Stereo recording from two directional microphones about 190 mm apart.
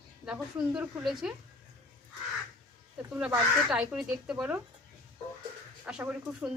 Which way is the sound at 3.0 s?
5° right (ahead or behind).